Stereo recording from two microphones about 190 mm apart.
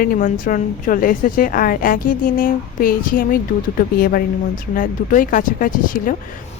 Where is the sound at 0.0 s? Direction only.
45° left (ahead or behind).